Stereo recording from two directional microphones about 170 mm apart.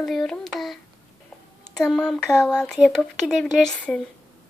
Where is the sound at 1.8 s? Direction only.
5° left (ahead or behind).